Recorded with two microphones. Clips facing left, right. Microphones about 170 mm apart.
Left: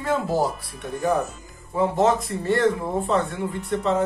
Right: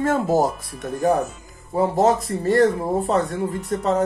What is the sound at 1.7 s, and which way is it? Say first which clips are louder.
Speech: right 2 dB; 40° right (ahead or behind).